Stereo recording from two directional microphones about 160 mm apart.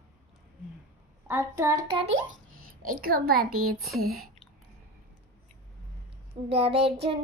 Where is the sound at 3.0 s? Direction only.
70° right (ahead or behind).